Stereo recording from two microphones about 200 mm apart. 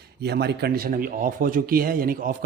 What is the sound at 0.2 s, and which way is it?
A man's voice, 55° right (ahead or behind).